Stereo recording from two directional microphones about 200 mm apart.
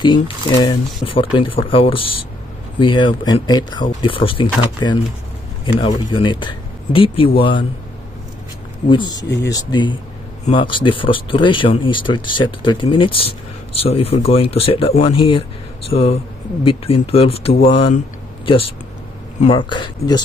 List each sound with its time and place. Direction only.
0.0 s speech: 25° left (ahead or behind)
8.8 s speech: 25° left (ahead or behind)